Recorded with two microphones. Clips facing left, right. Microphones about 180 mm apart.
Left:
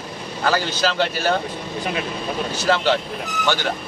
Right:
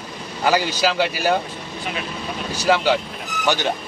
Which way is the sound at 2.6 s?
15° right (ahead or behind).